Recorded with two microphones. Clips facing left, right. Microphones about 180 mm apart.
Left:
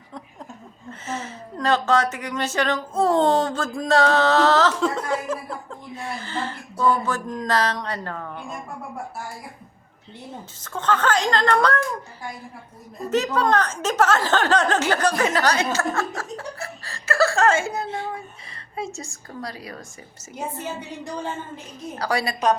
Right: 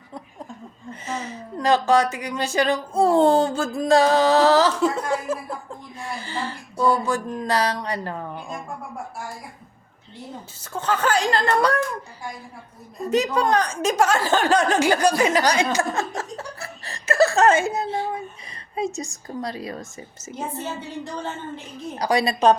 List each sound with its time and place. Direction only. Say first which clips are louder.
0.9 s speech: right 1 dB; 15° right (ahead or behind)
10.6 s speech: even; 10° right (ahead or behind)
13.1 s speech: right 1 dB; 10° right (ahead or behind)
21.9 s speech: right 4 dB; 15° right (ahead or behind)